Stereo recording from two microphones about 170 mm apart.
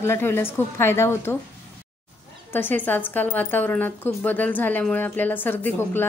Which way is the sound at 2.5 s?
10° left (ahead or behind).